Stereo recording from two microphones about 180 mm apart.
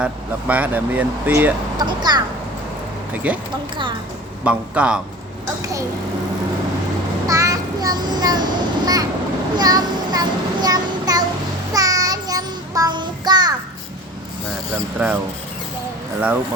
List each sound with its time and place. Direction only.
0.0 s speech: 10° right (ahead or behind)
1.8 s speech: 25° right (ahead or behind)
3.3 s speech: 10° right (ahead or behind)
4.4 s speech: 5° right (ahead or behind)
7.3 s child singing: 20° right (ahead or behind)